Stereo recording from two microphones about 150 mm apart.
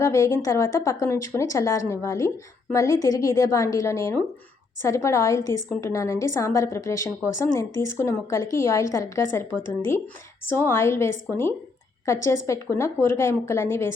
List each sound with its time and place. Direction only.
0.0 s a woman's voice: 20° left (ahead or behind)